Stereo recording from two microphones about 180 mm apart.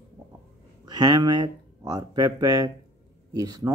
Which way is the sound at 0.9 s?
25° right (ahead or behind).